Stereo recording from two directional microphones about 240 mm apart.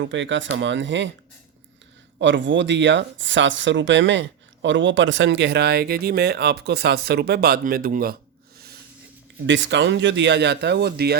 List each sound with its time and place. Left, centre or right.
0.0 s speech: right
2.1 s speech: right